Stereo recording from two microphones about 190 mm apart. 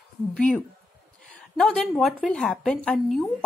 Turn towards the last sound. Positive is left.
turn(degrees=5)  # may be behind; listen again after turning